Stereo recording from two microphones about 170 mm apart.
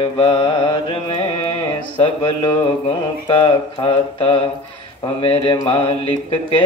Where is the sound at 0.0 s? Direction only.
35° left (ahead or behind).